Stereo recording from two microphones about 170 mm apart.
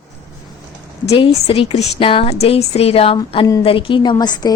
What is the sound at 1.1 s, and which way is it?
A woman's voice, 30° left (ahead or behind).